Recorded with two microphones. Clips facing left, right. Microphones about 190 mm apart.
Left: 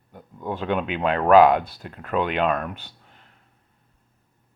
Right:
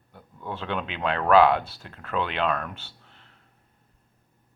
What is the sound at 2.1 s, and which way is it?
Speech, 45° left (ahead or behind).